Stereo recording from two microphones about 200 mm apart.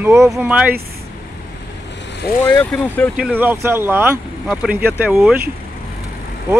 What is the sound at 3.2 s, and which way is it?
Speech, 10° right (ahead or behind).